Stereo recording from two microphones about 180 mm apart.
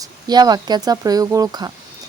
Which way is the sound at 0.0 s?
20° right (ahead or behind).